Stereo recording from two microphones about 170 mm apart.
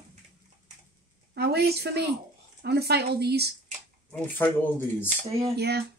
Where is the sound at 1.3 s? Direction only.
70° right (ahead or behind).